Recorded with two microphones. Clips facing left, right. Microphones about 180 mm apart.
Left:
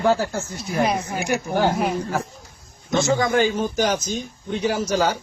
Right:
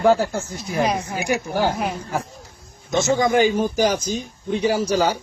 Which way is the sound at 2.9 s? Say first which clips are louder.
Right 1 dB; 20° right (ahead or behind).